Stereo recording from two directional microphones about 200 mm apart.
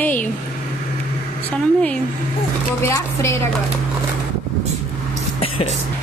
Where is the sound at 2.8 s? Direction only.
15° left (ahead or behind).